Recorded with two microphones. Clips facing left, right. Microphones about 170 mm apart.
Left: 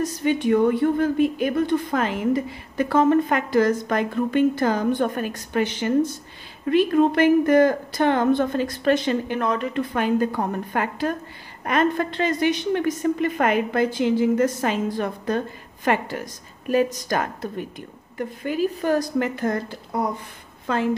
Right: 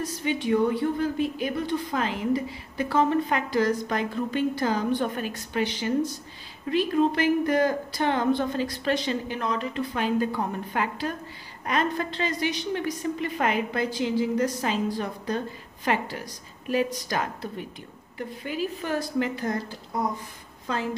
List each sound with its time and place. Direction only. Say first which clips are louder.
0.0 s a woman's voice: left 6 dB; 50° left (ahead or behind)